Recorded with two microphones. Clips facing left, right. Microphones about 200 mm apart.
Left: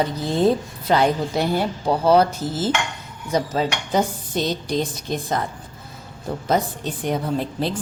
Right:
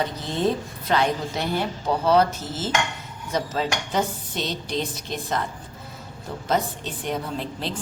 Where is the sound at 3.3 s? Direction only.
35° left (ahead or behind).